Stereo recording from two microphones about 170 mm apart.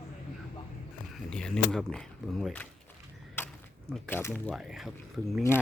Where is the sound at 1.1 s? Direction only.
5° left (ahead or behind).